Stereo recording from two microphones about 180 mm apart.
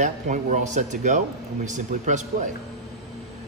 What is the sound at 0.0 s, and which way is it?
Speech, 45° right (ahead or behind).